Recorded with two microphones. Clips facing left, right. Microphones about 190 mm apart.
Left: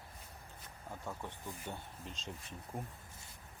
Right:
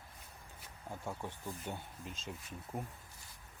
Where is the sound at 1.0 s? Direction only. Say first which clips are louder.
Right 2 dB; 10° right (ahead or behind).